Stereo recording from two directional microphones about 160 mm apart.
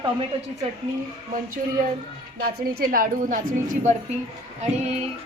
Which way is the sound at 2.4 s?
65° right (ahead or behind).